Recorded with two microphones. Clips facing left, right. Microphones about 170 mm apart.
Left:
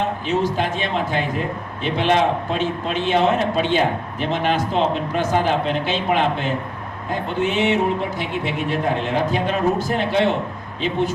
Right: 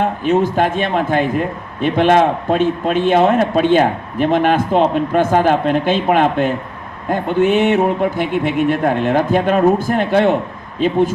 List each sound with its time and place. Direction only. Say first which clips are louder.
0.3 s a man's voice: right 7 dB; 50° right (ahead or behind)